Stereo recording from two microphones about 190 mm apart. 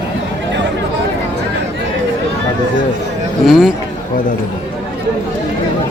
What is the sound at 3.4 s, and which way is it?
Speech, 5° right (ahead or behind).